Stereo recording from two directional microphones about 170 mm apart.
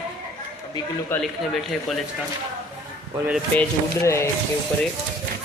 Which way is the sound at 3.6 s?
15° left (ahead or behind).